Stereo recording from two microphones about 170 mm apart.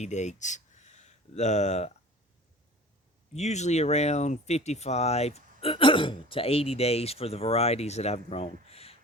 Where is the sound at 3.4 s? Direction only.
40° left (ahead or behind).